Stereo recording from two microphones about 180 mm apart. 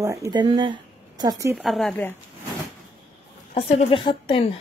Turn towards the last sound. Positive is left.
turn(degrees=30)  # may be behind; listen again after turning